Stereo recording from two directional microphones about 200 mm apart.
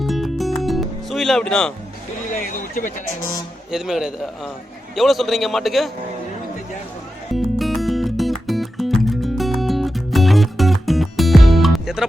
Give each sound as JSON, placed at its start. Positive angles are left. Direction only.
{"t": 0.0, "sound": "music", "side_deg": 0}
{"t": 2.3, "sound": "a sound", "side_deg": 40}
{"t": 3.7, "sound": "a man's voice", "side_deg": 0}
{"t": 7.3, "sound": "music", "side_deg": 0}